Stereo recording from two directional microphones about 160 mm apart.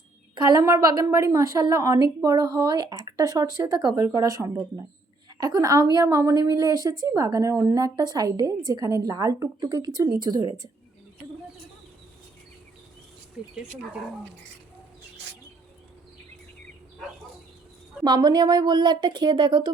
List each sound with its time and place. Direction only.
0.5 s a woman's voice: 20° right (ahead or behind)
13.4 s speech: 5° right (ahead or behind)
18.0 s a woman's voice: 25° right (ahead or behind)